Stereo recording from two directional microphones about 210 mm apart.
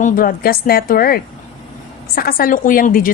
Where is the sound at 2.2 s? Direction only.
45° left (ahead or behind).